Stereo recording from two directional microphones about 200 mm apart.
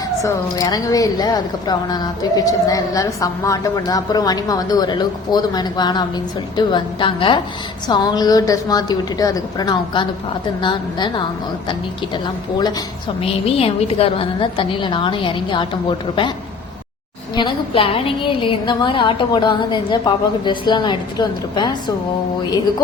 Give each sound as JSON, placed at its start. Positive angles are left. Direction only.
{"t": 0.2, "sound": "a woman's voice", "side_deg": 15}
{"t": 17.3, "sound": "a woman's voice", "side_deg": 25}